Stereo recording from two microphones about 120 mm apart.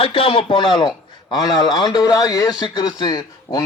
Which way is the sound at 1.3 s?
30° left (ahead or behind).